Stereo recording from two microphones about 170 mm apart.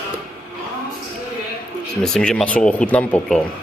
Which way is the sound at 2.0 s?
5° left (ahead or behind).